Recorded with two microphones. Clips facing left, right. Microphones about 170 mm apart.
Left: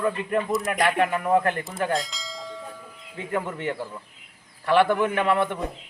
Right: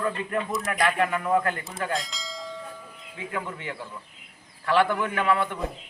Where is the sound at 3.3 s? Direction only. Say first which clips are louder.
Left 6 dB; 45° left (ahead or behind).